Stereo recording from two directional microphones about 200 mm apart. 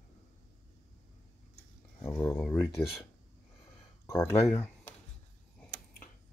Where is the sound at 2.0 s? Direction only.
15° left (ahead or behind).